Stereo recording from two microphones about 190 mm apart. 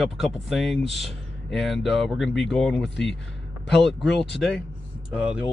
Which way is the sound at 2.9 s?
70° left (ahead or behind).